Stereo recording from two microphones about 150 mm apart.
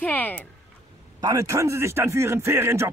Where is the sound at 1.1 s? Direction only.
25° right (ahead or behind).